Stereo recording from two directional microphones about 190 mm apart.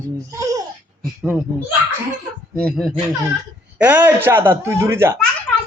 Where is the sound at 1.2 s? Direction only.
5° right (ahead or behind).